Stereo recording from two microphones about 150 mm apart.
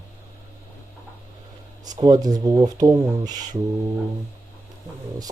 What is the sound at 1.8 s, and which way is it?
Speech, 25° right (ahead or behind).